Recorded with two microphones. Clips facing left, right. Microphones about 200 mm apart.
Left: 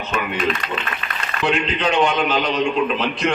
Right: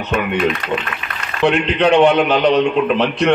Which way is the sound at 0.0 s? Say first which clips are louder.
Right 5 dB; 65° right (ahead or behind).